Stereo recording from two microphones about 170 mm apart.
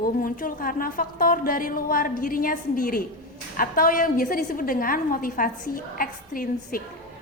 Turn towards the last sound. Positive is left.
turn(degrees=55)  # may be behind; listen again after turning